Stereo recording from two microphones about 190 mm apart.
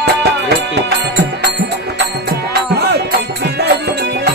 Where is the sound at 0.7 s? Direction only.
60° right (ahead or behind).